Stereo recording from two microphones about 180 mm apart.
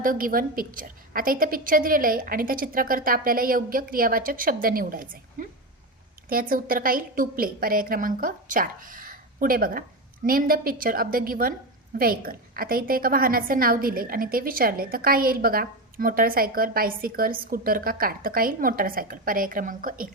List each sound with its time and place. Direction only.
0.0 s a woman's voice: 50° right (ahead or behind)